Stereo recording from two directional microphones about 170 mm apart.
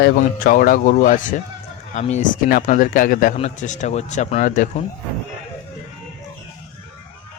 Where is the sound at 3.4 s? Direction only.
45° left (ahead or behind).